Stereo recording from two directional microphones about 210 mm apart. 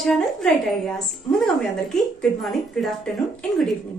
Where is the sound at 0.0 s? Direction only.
Centre (ahead or behind).